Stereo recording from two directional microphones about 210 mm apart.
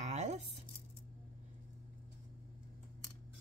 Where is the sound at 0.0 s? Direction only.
35° right (ahead or behind).